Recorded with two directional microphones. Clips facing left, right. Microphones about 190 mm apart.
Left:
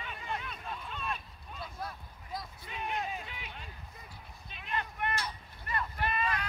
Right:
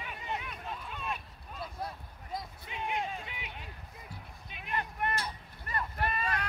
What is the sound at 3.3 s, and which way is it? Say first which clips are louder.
Vehicle: right 1 dB; 15° right (ahead or behind).